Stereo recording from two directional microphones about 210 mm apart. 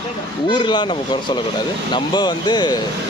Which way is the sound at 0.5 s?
20° left (ahead or behind).